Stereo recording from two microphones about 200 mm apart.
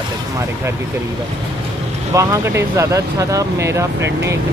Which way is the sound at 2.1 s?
15° right (ahead or behind).